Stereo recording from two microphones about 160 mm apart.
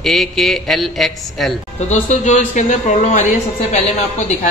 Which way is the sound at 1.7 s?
45° left (ahead or behind).